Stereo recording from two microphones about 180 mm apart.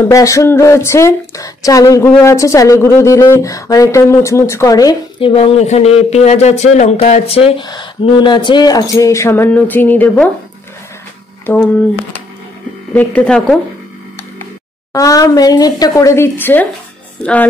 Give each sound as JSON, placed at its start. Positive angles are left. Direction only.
{"t": 0.1, "sound": "speech", "side_deg": 15}
{"t": 5.3, "sound": "speech", "side_deg": 30}
{"t": 12.9, "sound": "speech", "side_deg": 10}
{"t": 14.9, "sound": "speech", "side_deg": 20}